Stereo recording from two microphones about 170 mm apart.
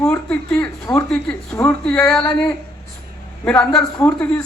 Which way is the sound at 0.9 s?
20° left (ahead or behind).